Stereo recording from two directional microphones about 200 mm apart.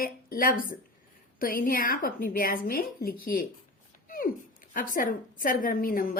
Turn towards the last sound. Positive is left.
turn(degrees=45)  # may be behind; listen again after turning